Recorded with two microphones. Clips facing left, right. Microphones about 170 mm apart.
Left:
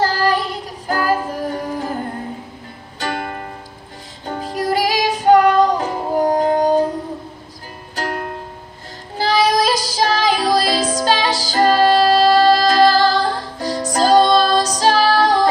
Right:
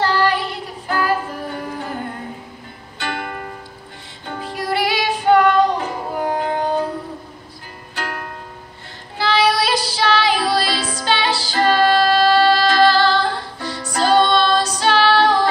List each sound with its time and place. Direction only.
0.0 s music: 40° left (ahead or behind)
3.0 s music: 40° left (ahead or behind)
7.9 s music: 40° left (ahead or behind)